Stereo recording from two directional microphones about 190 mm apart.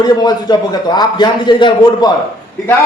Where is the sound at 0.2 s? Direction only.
20° left (ahead or behind).